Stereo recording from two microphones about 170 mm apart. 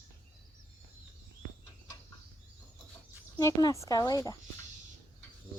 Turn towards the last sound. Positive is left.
turn(degrees=20)  # may be behind; listen again after turning